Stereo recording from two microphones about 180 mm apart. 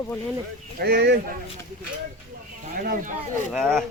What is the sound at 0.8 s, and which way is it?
Speech, 60° right (ahead or behind).